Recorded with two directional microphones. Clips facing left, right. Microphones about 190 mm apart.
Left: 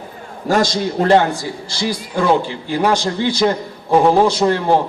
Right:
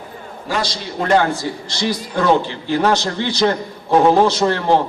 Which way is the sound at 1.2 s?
15° left (ahead or behind).